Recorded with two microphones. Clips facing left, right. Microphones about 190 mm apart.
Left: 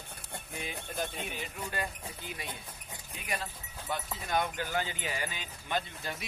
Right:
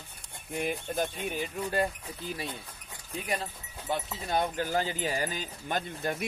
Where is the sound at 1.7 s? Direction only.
35° right (ahead or behind).